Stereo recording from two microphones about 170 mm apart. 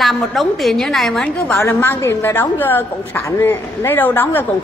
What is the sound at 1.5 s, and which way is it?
A woman's voice, 15° left (ahead or behind).